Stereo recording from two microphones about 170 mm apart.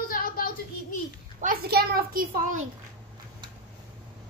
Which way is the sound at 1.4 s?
60° right (ahead or behind).